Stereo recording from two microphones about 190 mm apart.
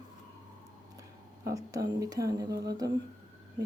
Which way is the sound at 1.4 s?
20° right (ahead or behind).